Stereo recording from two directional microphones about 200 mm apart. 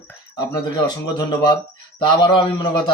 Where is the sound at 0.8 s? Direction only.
20° left (ahead or behind).